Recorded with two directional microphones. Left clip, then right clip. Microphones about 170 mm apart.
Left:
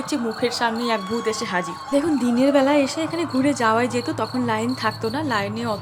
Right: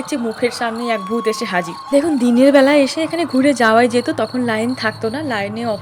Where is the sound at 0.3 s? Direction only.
15° right (ahead or behind).